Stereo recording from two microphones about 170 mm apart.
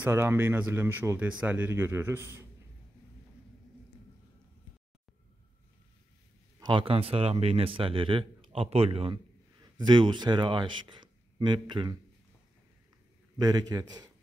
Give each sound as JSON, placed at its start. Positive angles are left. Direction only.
{"t": 0.0, "sound": "speech", "side_deg": -15}
{"t": 6.6, "sound": "speech", "side_deg": -30}
{"t": 13.4, "sound": "speech", "side_deg": -20}